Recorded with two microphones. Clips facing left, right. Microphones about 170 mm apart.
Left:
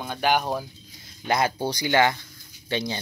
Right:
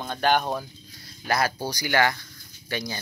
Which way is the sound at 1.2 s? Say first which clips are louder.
Left 2 dB; 20° left (ahead or behind).